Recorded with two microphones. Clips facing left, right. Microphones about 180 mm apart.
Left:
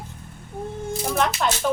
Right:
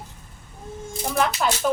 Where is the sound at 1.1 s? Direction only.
5° right (ahead or behind).